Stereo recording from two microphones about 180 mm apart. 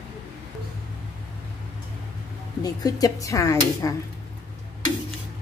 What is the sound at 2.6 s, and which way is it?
Speech, 20° left (ahead or behind).